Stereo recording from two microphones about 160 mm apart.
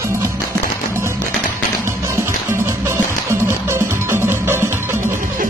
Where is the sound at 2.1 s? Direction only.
15° right (ahead or behind).